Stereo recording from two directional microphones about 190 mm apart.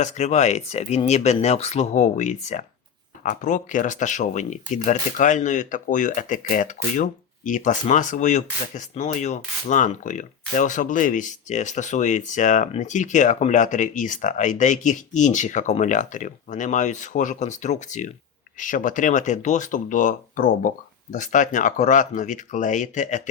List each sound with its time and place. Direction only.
0.0 s speech: 35° left (ahead or behind)